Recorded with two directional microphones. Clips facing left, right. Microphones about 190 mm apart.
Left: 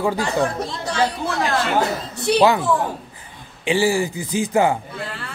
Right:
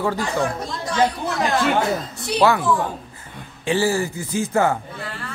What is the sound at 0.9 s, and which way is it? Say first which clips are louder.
Speech: right 1 dB; 20° right (ahead or behind).